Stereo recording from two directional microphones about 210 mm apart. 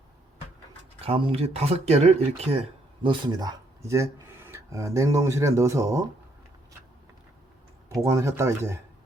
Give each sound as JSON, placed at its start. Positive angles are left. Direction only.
{"t": 1.0, "sound": "speech", "side_deg": -25}
{"t": 8.0, "sound": "speech", "side_deg": -15}